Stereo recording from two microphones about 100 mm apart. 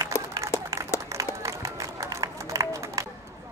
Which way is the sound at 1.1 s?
30° right (ahead or behind).